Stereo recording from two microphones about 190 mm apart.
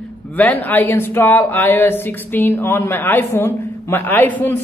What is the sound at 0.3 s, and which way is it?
Speech, 10° left (ahead or behind).